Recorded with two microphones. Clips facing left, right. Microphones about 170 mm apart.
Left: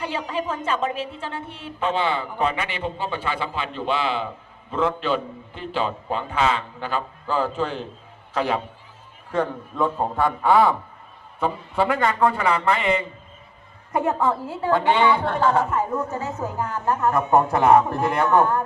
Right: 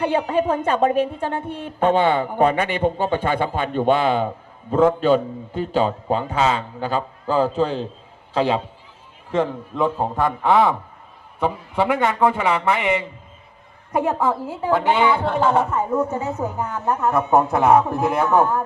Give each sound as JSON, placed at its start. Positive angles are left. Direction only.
{"t": 0.0, "sound": "a man's voice", "side_deg": -55}
{"t": 9.4, "sound": "a man's voice", "side_deg": -5}
{"t": 11.3, "sound": "a man's voice", "side_deg": -15}
{"t": 13.9, "sound": "a man's voice", "side_deg": -5}
{"t": 16.0, "sound": "a woman's voice", "side_deg": -25}
{"t": 16.8, "sound": "a man's voice", "side_deg": -5}